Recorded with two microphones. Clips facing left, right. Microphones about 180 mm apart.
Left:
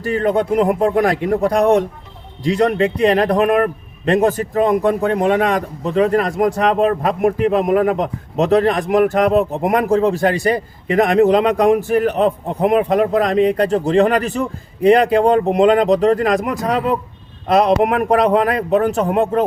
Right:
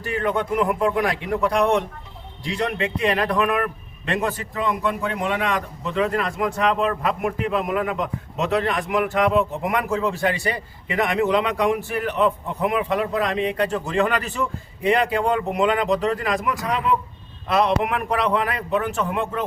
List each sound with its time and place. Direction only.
0.0 s a man's voice: 35° left (ahead or behind)